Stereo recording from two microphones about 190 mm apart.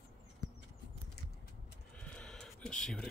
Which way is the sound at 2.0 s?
5° left (ahead or behind).